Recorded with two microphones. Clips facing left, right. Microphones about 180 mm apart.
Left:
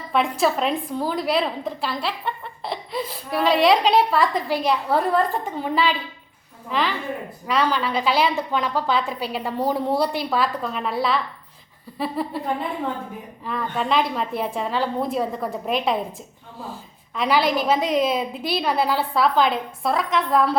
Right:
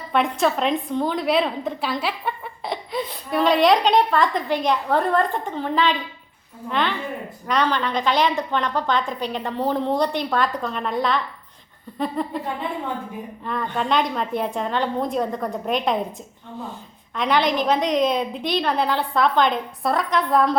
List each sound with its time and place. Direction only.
0.1 s speech: centre (ahead or behind)
13.4 s speech: centre (ahead or behind)
17.2 s speech: 5° left (ahead or behind)